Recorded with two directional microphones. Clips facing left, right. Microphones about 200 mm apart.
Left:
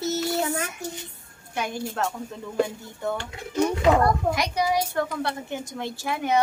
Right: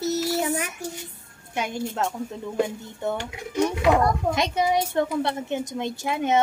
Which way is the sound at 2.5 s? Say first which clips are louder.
Left 1 dB; 20° right (ahead or behind).